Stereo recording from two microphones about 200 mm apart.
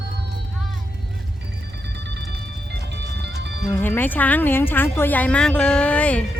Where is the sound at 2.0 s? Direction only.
55° right (ahead or behind).